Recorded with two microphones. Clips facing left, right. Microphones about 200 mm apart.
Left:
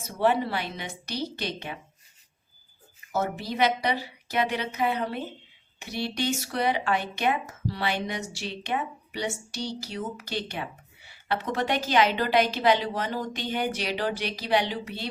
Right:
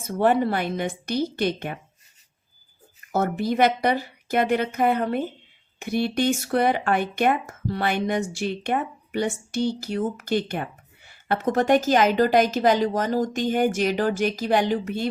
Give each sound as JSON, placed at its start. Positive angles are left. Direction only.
{"t": 0.0, "sound": "speech", "side_deg": -50}
{"t": 3.1, "sound": "speech", "side_deg": -50}